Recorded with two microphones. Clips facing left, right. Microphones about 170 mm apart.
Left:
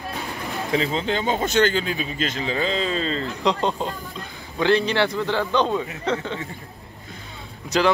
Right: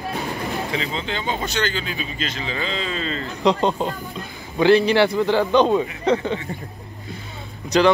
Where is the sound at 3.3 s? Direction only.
Centre (ahead or behind).